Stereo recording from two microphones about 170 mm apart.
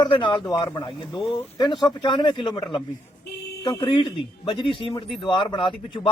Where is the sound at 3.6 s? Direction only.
25° left (ahead or behind).